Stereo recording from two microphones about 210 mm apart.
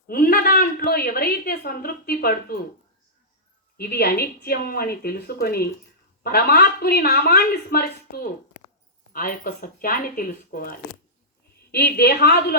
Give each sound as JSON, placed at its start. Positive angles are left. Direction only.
{"t": 0.1, "sound": "a woman's voice", "side_deg": 45}
{"t": 3.8, "sound": "a woman's voice", "side_deg": 50}